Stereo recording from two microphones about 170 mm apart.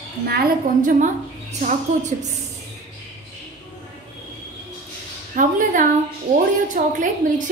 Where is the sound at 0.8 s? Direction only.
45° right (ahead or behind).